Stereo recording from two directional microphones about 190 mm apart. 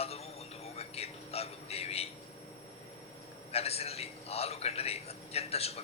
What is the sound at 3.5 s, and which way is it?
A man's voice, 30° left (ahead or behind).